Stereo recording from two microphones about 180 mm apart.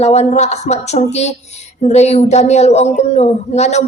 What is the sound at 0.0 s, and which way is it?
Speech, 35° left (ahead or behind).